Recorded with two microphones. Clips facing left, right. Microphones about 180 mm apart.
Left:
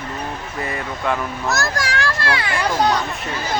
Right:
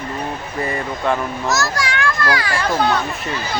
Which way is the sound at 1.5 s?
50° left (ahead or behind).